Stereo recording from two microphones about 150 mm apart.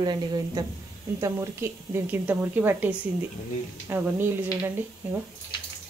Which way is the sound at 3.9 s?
15° right (ahead or behind).